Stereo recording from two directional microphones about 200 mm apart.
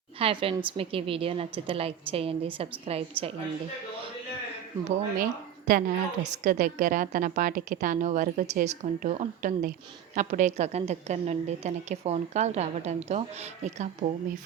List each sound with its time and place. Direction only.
0.2 s a woman's voice: 30° right (ahead or behind)
4.9 s a woman's voice: 45° right (ahead or behind)